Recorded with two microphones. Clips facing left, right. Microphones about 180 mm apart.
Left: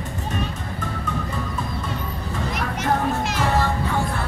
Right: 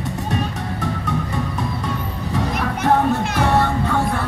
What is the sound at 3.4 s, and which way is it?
Music, 65° right (ahead or behind).